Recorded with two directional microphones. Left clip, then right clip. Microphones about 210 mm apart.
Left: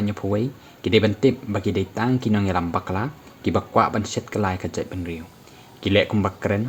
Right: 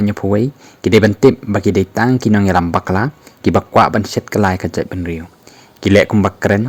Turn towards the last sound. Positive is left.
turn(degrees=-45)  # may be behind; listen again after turning